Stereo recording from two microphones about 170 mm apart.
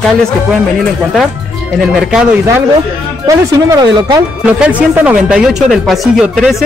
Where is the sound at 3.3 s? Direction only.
20° right (ahead or behind).